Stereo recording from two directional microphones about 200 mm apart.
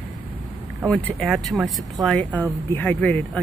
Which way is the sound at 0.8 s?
5° left (ahead or behind).